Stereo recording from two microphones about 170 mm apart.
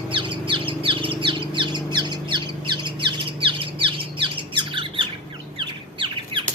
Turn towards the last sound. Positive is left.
turn(degrees=-30)  # may be behind; listen again after turning